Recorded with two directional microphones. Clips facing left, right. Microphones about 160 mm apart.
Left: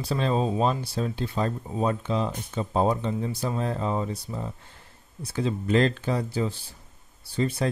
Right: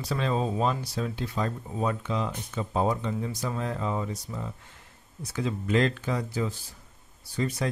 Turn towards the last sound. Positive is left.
turn(degrees=30)  # may be behind; listen again after turning